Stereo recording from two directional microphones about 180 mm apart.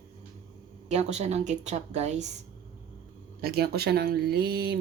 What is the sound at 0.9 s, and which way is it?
A woman's voice, 40° right (ahead or behind).